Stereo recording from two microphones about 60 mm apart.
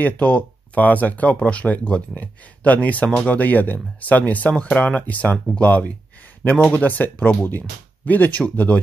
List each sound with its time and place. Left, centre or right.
0.0 s speech: left